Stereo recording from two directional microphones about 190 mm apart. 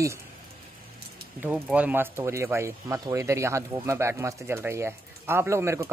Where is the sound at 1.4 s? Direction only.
5° right (ahead or behind).